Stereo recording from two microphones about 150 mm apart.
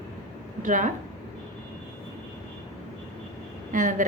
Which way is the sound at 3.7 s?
60° right (ahead or behind).